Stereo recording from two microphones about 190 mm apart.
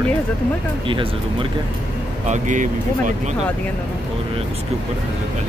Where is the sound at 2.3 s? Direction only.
40° right (ahead or behind).